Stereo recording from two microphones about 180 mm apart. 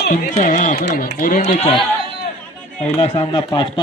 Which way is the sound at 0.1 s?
45° left (ahead or behind).